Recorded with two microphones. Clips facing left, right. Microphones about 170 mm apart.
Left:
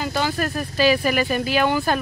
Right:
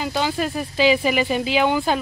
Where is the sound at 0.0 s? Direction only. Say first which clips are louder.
Right 1 dB; 15° right (ahead or behind).